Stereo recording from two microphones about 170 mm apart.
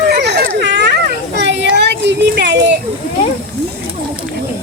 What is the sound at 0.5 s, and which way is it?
Dog, 90° right.